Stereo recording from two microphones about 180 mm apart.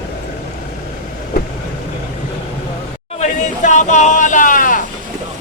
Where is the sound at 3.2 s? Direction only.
40° left (ahead or behind).